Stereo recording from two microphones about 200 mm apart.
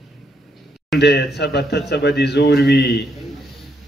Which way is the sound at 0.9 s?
55° left (ahead or behind).